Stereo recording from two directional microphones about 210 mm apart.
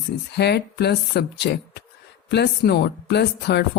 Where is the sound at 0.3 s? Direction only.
50° left (ahead or behind).